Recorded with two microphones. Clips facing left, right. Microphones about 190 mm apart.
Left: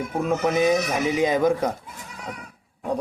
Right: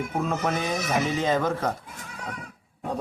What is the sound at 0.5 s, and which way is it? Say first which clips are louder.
Mantra: left 6 dB; 15° left (ahead or behind).